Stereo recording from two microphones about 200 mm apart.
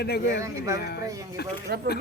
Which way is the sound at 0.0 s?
55° left (ahead or behind).